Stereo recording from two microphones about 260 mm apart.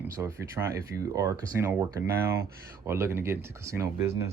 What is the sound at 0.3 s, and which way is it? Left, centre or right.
Speech, centre.